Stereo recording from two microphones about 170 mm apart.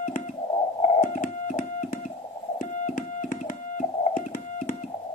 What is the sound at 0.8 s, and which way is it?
Synthesizer, 45° left (ahead or behind).